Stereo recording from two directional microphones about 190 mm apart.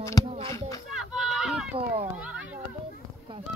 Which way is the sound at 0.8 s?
5° right (ahead or behind).